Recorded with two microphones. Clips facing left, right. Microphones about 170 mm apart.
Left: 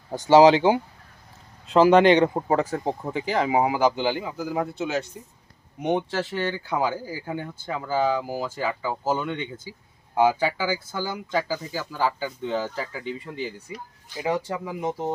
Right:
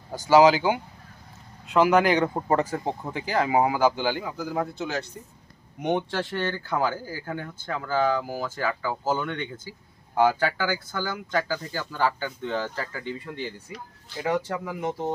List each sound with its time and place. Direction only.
0.1 s speech: 30° left (ahead or behind)
2.6 s speech: centre (ahead or behind)
3.1 s speech: 20° left (ahead or behind)
3.5 s speech: 10° left (ahead or behind)